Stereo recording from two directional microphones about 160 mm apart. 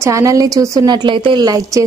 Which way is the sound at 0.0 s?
20° right (ahead or behind).